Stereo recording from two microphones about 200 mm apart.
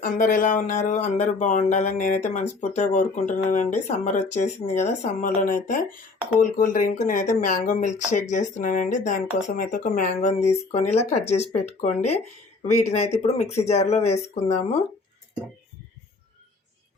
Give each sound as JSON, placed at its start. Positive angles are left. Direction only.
{"t": 0.0, "sound": "speech", "side_deg": 40}